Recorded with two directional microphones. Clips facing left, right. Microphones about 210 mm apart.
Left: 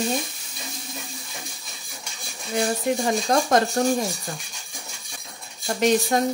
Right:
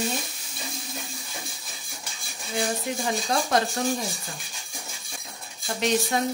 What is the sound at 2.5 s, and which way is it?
Speech, 45° left (ahead or behind).